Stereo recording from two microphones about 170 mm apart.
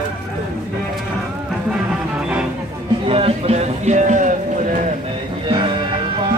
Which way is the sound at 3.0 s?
35° right (ahead or behind).